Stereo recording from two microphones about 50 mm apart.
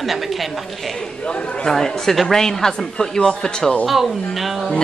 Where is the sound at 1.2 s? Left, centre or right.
Left.